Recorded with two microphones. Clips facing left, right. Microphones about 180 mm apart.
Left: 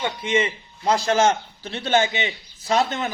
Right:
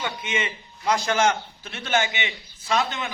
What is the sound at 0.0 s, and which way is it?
A man's voice, 30° left (ahead or behind).